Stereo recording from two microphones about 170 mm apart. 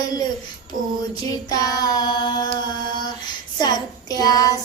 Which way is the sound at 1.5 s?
20° left (ahead or behind).